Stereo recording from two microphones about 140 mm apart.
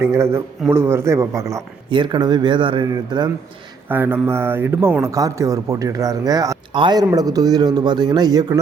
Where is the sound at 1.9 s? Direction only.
30° right (ahead or behind).